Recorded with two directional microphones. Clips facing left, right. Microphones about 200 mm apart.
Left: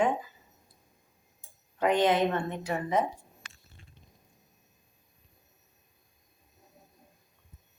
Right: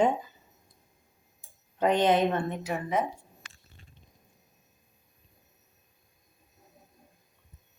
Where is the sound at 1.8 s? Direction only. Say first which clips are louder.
Right 1 dB; 20° right (ahead or behind).